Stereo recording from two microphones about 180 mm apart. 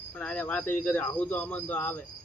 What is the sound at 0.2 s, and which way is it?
Speech, 5° left (ahead or behind).